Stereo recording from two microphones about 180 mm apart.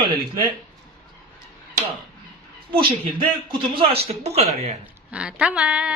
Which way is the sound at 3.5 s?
30° right (ahead or behind).